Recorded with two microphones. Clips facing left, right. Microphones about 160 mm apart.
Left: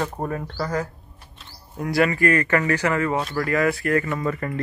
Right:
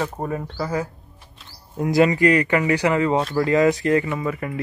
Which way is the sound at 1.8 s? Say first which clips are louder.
Right 4 dB; 20° right (ahead or behind).